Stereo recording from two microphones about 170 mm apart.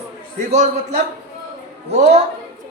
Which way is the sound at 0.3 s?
40° right (ahead or behind).